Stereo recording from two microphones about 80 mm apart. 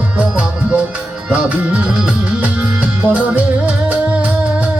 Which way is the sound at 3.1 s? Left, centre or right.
Centre.